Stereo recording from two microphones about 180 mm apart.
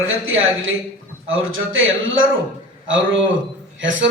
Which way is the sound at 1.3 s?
90° right.